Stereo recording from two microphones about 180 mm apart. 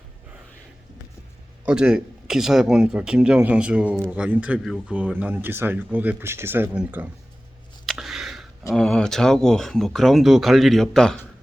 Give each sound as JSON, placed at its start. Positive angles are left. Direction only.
{"t": 1.6, "sound": "speech", "side_deg": -5}
{"t": 7.9, "sound": "a sound", "side_deg": 0}
{"t": 8.7, "sound": "speech", "side_deg": 5}